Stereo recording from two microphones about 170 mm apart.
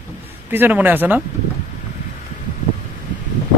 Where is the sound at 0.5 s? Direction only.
10° right (ahead or behind).